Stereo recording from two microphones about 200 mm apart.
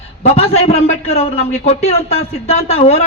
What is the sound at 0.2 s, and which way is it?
A man's voice, 30° left (ahead or behind).